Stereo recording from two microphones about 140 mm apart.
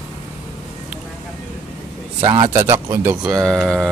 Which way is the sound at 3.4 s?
5° left (ahead or behind).